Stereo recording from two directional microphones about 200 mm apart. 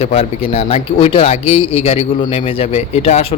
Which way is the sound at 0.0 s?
30° left (ahead or behind).